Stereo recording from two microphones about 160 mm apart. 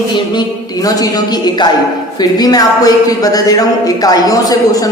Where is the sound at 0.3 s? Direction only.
25° left (ahead or behind).